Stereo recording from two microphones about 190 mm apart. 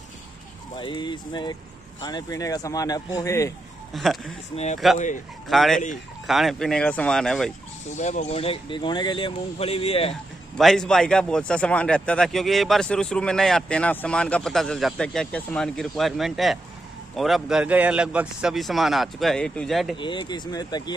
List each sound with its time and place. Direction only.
0.7 s a man's voice: 25° left (ahead or behind)
3.9 s a man's voice: centre (ahead or behind)
4.9 s speech: 40° left (ahead or behind)
5.5 s a man's voice: centre (ahead or behind)
7.9 s speech: 40° left (ahead or behind)
10.6 s a man's voice: centre (ahead or behind)
20.0 s speech: 25° left (ahead or behind)